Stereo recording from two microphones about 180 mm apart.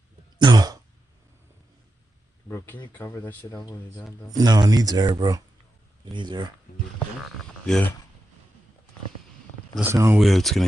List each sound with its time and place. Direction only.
0.4 s throat clearing: 25° right (ahead or behind)
2.4 s a sound: 10° left (ahead or behind)
2.9 s speech: 10° left (ahead or behind)
4.3 s speech: 20° right (ahead or behind)
7.6 s speech: 5° left (ahead or behind)
9.8 s speech: 15° right (ahead or behind)
10.1 s speech: centre (ahead or behind)